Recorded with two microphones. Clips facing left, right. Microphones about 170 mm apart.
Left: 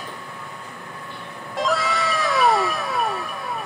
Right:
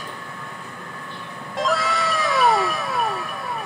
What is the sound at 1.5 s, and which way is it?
Cat, centre (ahead or behind).